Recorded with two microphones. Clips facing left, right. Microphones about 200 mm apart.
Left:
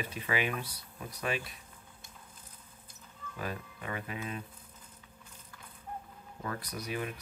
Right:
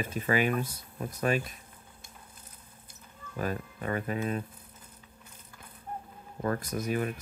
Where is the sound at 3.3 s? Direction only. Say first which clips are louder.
Right 6 dB; 45° right (ahead or behind).